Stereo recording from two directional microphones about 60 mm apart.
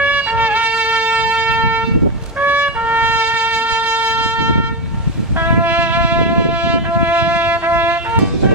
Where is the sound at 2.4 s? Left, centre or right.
Right.